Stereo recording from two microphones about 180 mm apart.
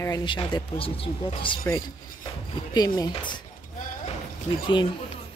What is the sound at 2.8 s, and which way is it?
Speech, 20° left (ahead or behind).